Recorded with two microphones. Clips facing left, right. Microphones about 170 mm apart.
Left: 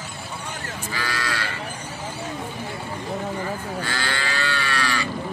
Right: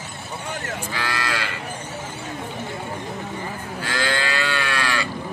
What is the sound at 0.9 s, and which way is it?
Livestock, 60° right (ahead or behind).